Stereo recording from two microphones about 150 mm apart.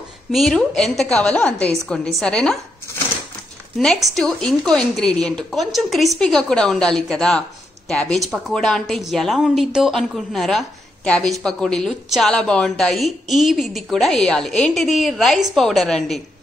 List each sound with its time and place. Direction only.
0.3 s a woman's voice: centre (ahead or behind)
3.7 s a woman's voice: centre (ahead or behind)